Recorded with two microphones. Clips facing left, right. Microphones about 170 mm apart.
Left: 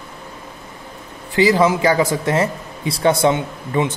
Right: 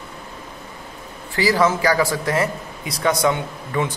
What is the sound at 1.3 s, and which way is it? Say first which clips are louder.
Speech: left 4 dB; 20° left (ahead or behind).